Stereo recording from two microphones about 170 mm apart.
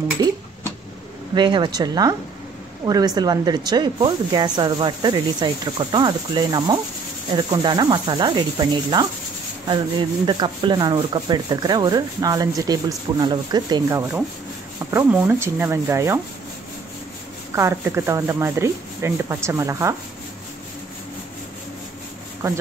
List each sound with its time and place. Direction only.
1.3 s speech: 25° right (ahead or behind)
17.6 s speech: 15° right (ahead or behind)